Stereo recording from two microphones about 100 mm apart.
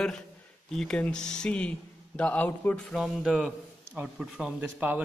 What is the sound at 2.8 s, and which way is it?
A man's voice, centre (ahead or behind).